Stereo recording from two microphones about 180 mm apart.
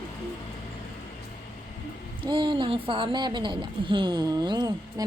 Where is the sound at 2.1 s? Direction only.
25° right (ahead or behind).